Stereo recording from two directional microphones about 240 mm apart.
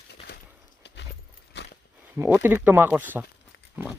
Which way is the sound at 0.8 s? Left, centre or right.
Left.